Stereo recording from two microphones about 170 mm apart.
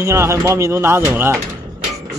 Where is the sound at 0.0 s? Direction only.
15° right (ahead or behind).